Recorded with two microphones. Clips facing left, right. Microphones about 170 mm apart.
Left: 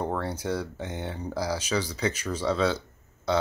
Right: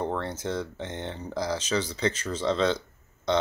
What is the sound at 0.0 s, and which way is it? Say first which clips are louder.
Speech: even; 10° left (ahead or behind).